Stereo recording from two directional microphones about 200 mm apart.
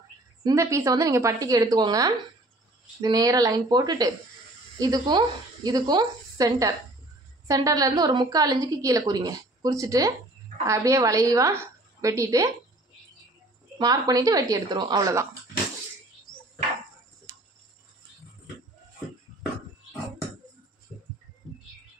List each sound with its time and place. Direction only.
0.4 s a woman's voice: 15° right (ahead or behind)
13.7 s a woman's voice: 20° right (ahead or behind)
17.3 s cricket: 10° right (ahead or behind)